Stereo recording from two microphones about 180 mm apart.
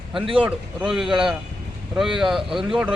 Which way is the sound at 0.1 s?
Centre (ahead or behind).